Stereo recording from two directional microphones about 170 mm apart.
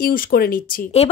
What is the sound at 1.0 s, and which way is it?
Speech, 40° left (ahead or behind).